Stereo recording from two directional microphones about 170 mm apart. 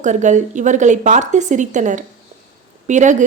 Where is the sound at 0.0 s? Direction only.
45° right (ahead or behind).